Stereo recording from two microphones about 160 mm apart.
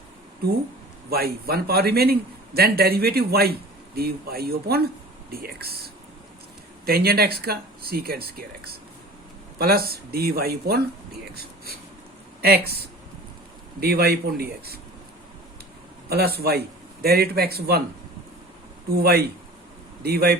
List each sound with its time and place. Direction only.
1.1 s a man's voice: 75° right (ahead or behind)
6.8 s a man's voice: 70° right (ahead or behind)
13.7 s a man's voice: 75° right (ahead or behind)
16.0 s a man's voice: 80° right
18.9 s a man's voice: 75° right (ahead or behind)